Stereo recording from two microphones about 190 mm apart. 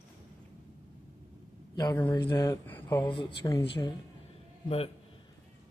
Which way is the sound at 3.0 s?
25° left (ahead or behind).